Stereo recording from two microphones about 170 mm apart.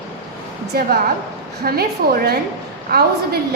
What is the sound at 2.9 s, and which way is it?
Speech, 70° right (ahead or behind).